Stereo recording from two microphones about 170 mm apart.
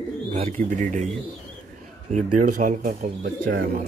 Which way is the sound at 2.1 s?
45° right (ahead or behind).